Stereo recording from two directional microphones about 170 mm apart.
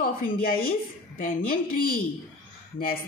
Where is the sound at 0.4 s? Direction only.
60° left (ahead or behind).